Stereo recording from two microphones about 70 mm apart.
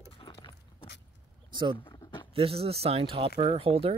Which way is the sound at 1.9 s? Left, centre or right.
Left.